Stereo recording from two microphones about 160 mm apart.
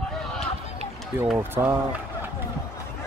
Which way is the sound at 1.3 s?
10° right (ahead or behind).